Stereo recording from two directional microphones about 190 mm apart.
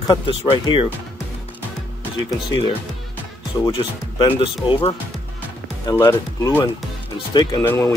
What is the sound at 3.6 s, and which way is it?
Speech, 25° left (ahead or behind).